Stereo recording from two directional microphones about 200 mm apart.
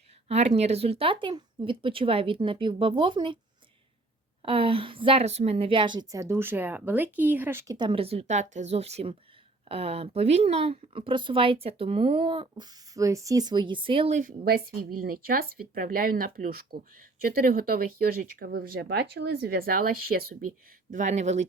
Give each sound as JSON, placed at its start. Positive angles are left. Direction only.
{"t": 0.3, "sound": "speech", "side_deg": -30}
{"t": 4.4, "sound": "speech", "side_deg": -25}
{"t": 7.8, "sound": "speech", "side_deg": -25}
{"t": 14.2, "sound": "speech", "side_deg": -40}
{"t": 20.9, "sound": "speech", "side_deg": -35}